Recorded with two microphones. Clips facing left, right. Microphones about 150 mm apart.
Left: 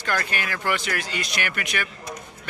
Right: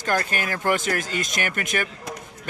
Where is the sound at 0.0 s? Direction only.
40° right (ahead or behind).